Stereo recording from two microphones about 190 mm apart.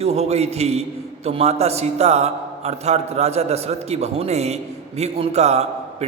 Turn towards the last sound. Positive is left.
turn(degrees=-35)  # may be behind; listen again after turning